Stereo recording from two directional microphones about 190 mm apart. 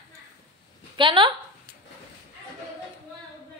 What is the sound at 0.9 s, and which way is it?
Speech, 25° right (ahead or behind).